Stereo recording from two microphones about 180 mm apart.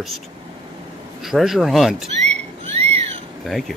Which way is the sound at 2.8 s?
35° right (ahead or behind).